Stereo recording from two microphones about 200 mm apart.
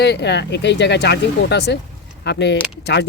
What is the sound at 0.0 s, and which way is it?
Speech, 55° left (ahead or behind).